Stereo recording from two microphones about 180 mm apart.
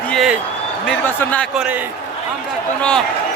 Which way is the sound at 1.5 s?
10° right (ahead or behind).